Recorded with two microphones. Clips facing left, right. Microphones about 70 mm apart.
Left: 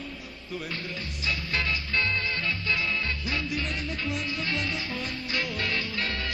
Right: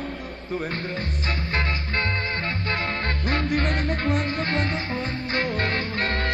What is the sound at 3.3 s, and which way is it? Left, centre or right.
Music, right.